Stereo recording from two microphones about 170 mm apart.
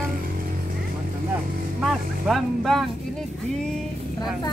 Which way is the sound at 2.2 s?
Centre (ahead or behind).